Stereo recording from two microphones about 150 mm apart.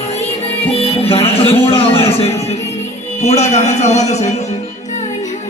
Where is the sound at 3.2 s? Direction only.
50° left (ahead or behind).